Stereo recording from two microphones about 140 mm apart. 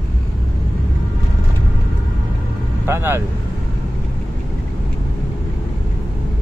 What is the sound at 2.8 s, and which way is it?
Speech, 15° right (ahead or behind).